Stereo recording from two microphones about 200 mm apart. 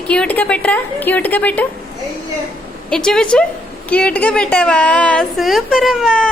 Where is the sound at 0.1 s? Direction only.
5° left (ahead or behind).